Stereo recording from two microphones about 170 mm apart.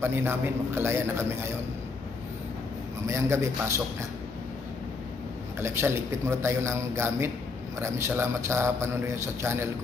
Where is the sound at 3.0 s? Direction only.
15° right (ahead or behind).